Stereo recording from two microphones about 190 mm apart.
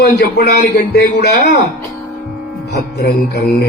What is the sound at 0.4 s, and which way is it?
A man's voice, 65° left (ahead or behind).